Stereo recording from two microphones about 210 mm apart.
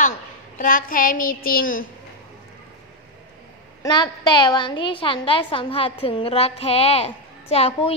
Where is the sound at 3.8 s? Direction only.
20° left (ahead or behind).